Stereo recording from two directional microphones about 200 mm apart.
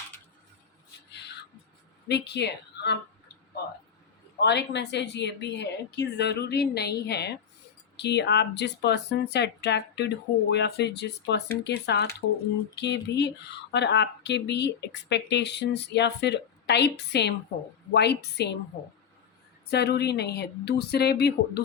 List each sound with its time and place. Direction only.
2.0 s a woman's voice: 60° left (ahead or behind)
4.4 s speech: 60° left (ahead or behind)
19.7 s speech: 55° left (ahead or behind)